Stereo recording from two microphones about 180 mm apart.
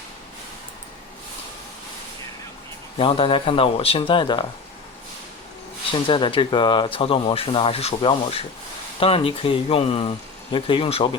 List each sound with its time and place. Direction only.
3.0 s speech: 30° left (ahead or behind)
5.9 s speech: 30° left (ahead or behind)